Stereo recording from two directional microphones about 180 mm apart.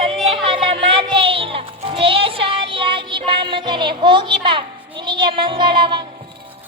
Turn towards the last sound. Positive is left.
turn(degrees=-25)  # may be behind; listen again after turning